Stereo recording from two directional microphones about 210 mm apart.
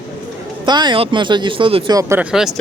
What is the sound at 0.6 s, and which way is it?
Speech, 20° right (ahead or behind).